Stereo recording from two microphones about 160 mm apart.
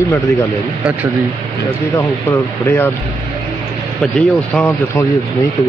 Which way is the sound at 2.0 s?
20° left (ahead or behind).